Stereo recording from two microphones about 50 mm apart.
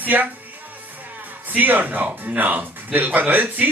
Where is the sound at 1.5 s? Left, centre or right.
Right.